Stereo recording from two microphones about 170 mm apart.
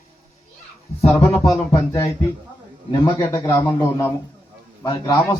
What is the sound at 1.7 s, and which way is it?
A man's voice, 30° left (ahead or behind).